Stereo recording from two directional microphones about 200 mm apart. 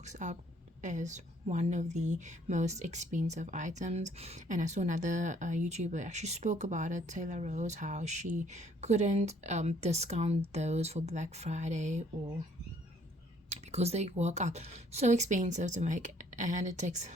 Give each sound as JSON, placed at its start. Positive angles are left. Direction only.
{"t": 0.0, "sound": "speech", "side_deg": -35}
{"t": 13.5, "sound": "speech", "side_deg": -35}